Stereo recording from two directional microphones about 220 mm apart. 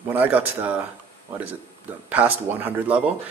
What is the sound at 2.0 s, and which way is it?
Speech, 10° right (ahead or behind).